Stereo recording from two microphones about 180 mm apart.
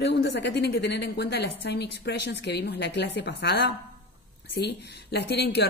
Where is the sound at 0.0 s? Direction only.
70° left (ahead or behind).